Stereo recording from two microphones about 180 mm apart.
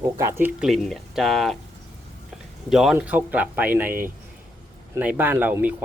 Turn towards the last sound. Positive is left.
turn(degrees=-10)  # may be behind; listen again after turning